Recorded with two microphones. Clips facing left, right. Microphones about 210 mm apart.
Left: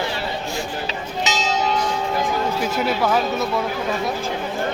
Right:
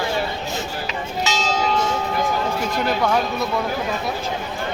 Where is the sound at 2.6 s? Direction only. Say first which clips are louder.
Even; 5° left (ahead or behind).